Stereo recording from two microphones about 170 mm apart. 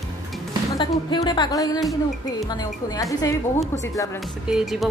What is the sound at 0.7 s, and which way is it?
A woman's voice, 25° left (ahead or behind).